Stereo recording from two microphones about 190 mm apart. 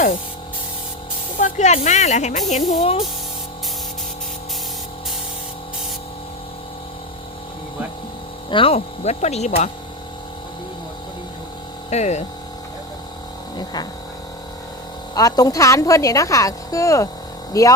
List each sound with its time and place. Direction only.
1.4 s speech: 40° left (ahead or behind)
8.4 s speech: 30° left (ahead or behind)
11.9 s speech: 35° left (ahead or behind)
15.1 s a woman's voice: 20° left (ahead or behind)